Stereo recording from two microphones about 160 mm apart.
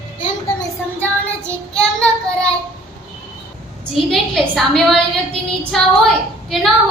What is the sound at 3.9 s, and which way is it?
A woman's voice, centre (ahead or behind).